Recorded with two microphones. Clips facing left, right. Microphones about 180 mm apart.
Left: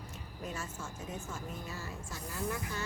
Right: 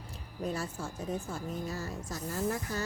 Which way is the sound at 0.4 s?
35° right (ahead or behind).